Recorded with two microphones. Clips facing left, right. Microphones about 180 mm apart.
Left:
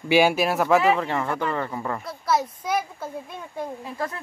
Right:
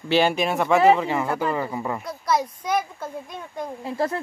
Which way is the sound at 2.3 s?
5° left (ahead or behind).